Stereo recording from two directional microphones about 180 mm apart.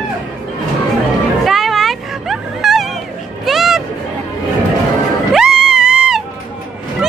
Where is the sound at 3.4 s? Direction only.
Centre (ahead or behind).